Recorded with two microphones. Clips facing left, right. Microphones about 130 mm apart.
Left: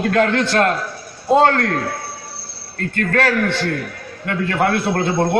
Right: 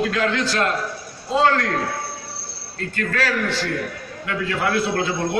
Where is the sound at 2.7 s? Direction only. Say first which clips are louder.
Left 5 dB; 50° left (ahead or behind).